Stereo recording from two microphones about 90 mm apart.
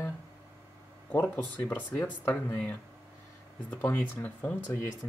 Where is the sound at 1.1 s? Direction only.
20° left (ahead or behind).